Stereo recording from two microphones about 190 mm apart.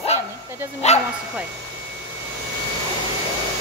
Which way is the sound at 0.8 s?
35° left (ahead or behind).